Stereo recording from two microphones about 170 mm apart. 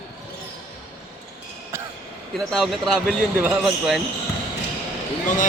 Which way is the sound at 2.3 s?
Centre (ahead or behind).